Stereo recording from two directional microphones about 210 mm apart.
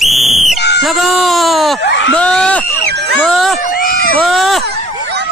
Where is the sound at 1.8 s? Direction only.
60° left (ahead or behind).